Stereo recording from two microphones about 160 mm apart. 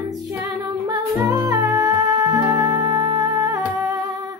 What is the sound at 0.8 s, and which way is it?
Music, 20° right (ahead or behind).